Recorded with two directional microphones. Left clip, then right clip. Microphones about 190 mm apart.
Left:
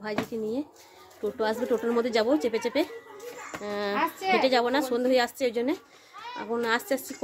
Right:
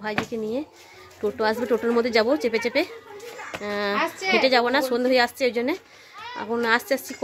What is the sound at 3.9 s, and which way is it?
Speech, 40° left (ahead or behind).